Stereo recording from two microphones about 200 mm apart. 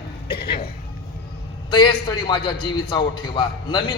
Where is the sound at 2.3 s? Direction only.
25° left (ahead or behind).